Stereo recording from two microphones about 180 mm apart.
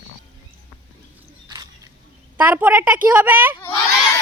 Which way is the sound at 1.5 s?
20° right (ahead or behind).